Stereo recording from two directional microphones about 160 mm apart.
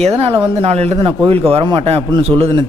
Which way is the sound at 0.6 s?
40° right (ahead or behind).